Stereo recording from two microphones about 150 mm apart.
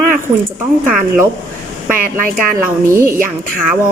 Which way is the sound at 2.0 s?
70° right (ahead or behind).